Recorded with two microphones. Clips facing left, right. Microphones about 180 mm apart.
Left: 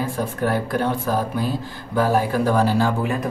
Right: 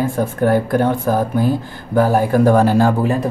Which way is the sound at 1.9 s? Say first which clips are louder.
Right 5 dB; 50° right (ahead or behind).